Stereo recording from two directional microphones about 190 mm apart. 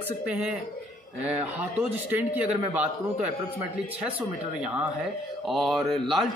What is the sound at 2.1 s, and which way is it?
A man's voice, 10° right (ahead or behind).